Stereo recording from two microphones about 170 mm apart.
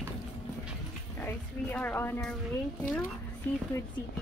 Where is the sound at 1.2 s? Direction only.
10° left (ahead or behind).